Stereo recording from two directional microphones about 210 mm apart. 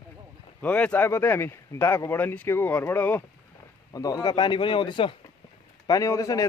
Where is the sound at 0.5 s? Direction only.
5° left (ahead or behind).